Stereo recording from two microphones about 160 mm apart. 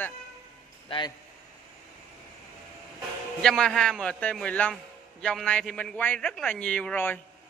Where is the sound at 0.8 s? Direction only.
30° left (ahead or behind).